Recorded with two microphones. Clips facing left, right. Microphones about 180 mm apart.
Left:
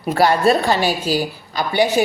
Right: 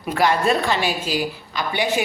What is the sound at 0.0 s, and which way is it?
A woman's voice, 40° left (ahead or behind).